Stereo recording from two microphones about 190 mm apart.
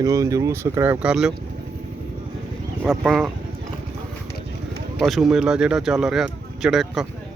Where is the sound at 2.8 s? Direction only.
5° right (ahead or behind).